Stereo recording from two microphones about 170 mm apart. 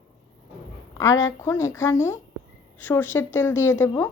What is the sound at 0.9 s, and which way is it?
A woman's voice, 20° left (ahead or behind).